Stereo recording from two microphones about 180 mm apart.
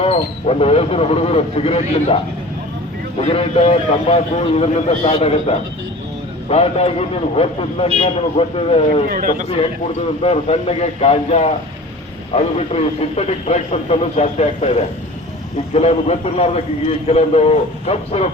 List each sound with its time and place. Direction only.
0.0 s a man's voice: 35° left (ahead or behind)
3.2 s a man's voice: 35° left (ahead or behind)
9.0 s a man's voice: 50° right (ahead or behind)
10.2 s a man's voice: 35° left (ahead or behind)